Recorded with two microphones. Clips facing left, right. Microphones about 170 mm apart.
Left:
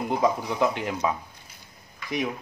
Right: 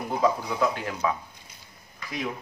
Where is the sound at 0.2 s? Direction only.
20° left (ahead or behind).